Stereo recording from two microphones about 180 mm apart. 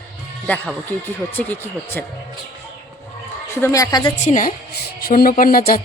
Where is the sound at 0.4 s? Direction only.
5° left (ahead or behind).